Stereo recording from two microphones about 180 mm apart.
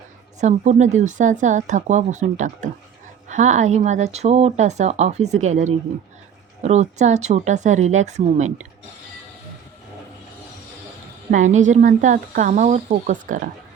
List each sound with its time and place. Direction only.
0.3 s speech: 40° right (ahead or behind)
11.3 s speech: 45° right (ahead or behind)